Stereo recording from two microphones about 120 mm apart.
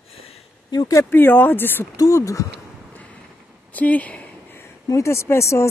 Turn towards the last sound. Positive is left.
turn(degrees=25)  # may be behind; listen again after turning